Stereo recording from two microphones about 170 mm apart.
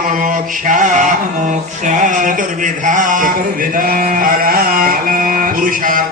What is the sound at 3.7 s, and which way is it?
Music, 55° right (ahead or behind).